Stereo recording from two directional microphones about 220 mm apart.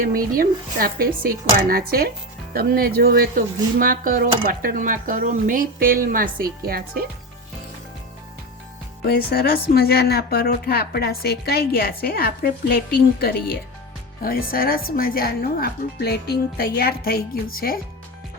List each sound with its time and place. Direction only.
0.0 s speech: 40° right (ahead or behind)
9.0 s speech: 45° left (ahead or behind)